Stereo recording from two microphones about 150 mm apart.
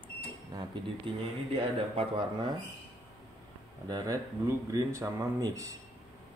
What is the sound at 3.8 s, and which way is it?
Speech, 25° right (ahead or behind).